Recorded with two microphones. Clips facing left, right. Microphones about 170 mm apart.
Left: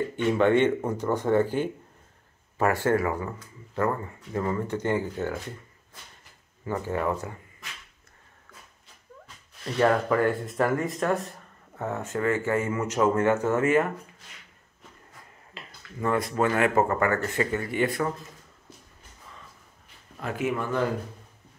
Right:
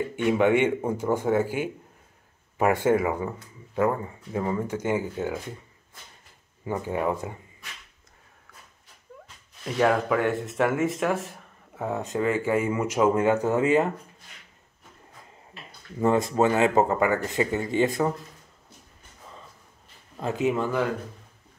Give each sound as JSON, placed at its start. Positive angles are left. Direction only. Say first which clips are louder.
{"t": 0.1, "sound": "speech", "louder": "right 1 dB", "side_deg": -10}
{"t": 6.6, "sound": "speech", "louder": "right 1 dB", "side_deg": -15}
{"t": 9.8, "sound": "speech", "louder": "even", "side_deg": -5}
{"t": 16.0, "sound": "speech", "louder": "right 4 dB", "side_deg": -25}
{"t": 20.2, "sound": "speech", "louder": "right 4 dB", "side_deg": -25}